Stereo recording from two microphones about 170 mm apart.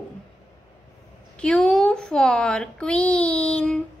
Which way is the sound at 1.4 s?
5° left (ahead or behind).